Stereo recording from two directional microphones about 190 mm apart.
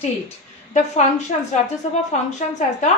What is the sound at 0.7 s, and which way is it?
A woman's voice, 40° left (ahead or behind).